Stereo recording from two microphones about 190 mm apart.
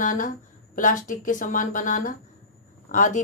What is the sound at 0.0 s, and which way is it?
A woman's voice, 45° left (ahead or behind).